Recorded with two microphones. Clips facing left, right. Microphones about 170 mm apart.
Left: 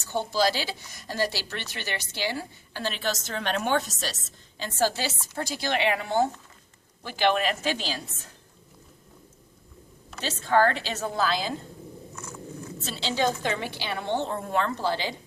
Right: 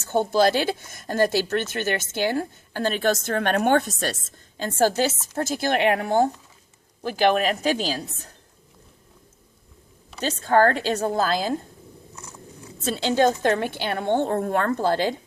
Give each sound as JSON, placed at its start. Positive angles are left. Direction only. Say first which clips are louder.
{"t": 0.1, "sound": "speech", "louder": "right 6 dB", "side_deg": -50}
{"t": 10.2, "sound": "speech", "louder": "right 4 dB", "side_deg": -45}
{"t": 12.1, "sound": "a sound", "louder": "left 4 dB", "side_deg": -15}
{"t": 12.8, "sound": "speech", "louder": "right 7 dB", "side_deg": -50}